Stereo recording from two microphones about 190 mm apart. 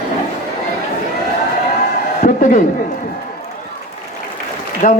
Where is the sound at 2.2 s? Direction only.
45° left (ahead or behind).